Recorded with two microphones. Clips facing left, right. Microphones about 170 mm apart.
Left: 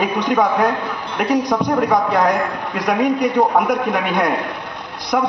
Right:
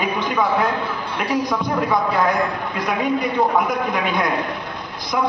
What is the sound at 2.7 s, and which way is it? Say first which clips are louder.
A man's voice: left 6 dB; 85° left.